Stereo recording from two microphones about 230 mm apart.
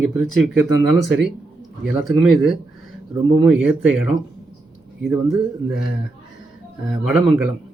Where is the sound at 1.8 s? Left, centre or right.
Centre.